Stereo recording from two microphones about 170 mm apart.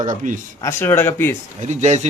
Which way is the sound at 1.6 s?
45° right (ahead or behind).